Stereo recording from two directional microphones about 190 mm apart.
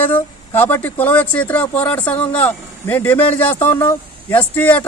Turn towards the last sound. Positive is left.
turn(degrees=10)  # may be behind; listen again after turning